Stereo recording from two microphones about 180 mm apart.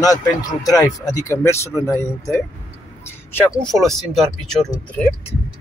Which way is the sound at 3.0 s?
10° left (ahead or behind).